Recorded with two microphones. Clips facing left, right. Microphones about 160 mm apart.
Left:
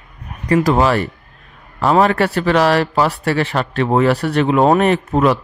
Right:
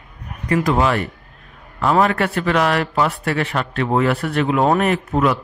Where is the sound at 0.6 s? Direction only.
35° left (ahead or behind).